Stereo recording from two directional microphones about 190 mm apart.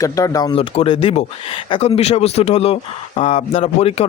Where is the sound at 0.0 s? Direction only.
20° left (ahead or behind).